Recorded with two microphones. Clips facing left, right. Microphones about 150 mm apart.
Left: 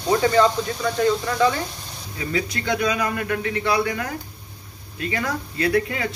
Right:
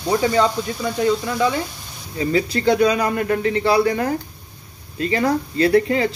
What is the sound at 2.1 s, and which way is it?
Speech, 30° right (ahead or behind).